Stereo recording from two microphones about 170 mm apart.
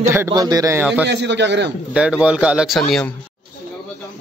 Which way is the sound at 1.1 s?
90° right.